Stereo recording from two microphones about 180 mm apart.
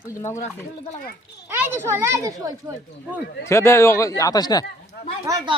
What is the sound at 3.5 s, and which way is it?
Speech, 15° left (ahead or behind).